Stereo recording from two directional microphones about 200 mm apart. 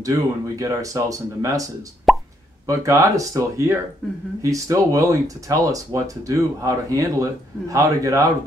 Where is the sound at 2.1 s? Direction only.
Centre (ahead or behind).